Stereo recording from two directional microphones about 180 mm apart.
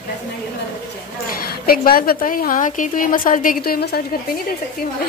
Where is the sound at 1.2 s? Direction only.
55° left (ahead or behind).